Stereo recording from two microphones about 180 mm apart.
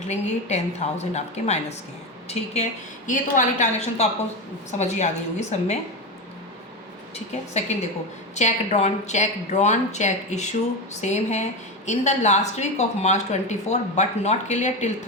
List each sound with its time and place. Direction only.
0.1 s speech: 40° left (ahead or behind)
7.7 s speech: 40° left (ahead or behind)